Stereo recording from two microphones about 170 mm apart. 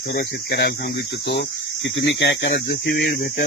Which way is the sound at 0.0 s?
60° left (ahead or behind).